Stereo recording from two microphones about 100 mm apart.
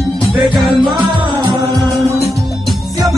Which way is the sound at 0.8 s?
50° right (ahead or behind).